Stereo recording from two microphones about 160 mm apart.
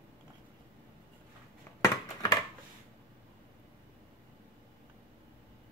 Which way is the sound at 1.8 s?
20° left (ahead or behind).